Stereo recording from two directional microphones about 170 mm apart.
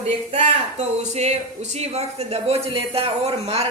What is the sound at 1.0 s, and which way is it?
Speech, 40° right (ahead or behind).